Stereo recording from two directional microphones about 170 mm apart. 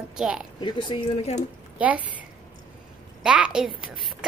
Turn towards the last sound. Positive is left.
turn(degrees=-5)  # may be behind; listen again after turning